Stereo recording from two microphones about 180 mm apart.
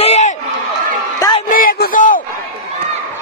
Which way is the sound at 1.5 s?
55° left (ahead or behind).